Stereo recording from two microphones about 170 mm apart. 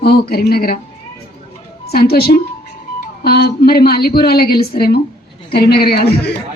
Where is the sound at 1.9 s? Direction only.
65° left (ahead or behind).